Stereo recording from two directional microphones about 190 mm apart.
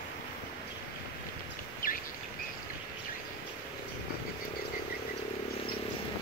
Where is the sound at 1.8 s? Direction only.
50° left (ahead or behind).